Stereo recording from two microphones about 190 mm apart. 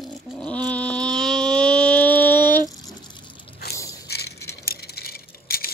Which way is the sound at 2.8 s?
20° left (ahead or behind).